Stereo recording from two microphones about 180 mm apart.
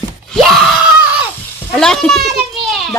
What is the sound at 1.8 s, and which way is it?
Children playing, 5° left (ahead or behind).